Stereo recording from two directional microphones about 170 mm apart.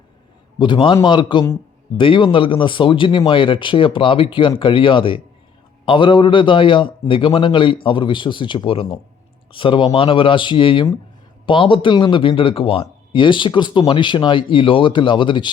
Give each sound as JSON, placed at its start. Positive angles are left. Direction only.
{"t": 0.6, "sound": "speech", "side_deg": 30}